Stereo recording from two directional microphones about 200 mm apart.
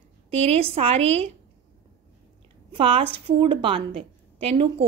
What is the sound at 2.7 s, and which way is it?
A woman's voice, 25° right (ahead or behind).